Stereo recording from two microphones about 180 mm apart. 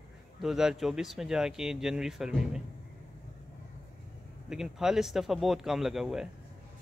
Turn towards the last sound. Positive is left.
turn(degrees=0)  # may be behind; listen again after turning